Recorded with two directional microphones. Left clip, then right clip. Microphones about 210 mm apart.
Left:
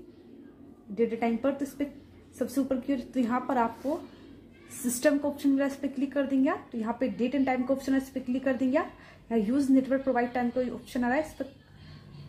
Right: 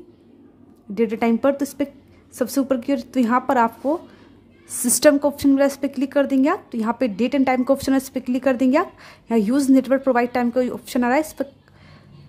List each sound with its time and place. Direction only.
0.9 s a woman's voice: 35° right (ahead or behind)
5.0 s a woman's voice: 35° right (ahead or behind)